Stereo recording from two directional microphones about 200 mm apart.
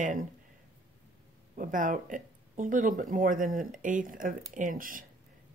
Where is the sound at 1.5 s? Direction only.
40° right (ahead or behind).